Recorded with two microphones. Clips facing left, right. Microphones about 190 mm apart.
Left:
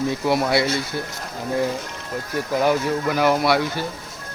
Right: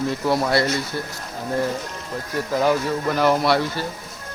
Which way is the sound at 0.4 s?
10° left (ahead or behind).